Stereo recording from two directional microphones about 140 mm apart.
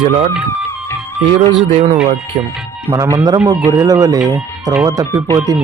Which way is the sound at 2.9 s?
20° right (ahead or behind).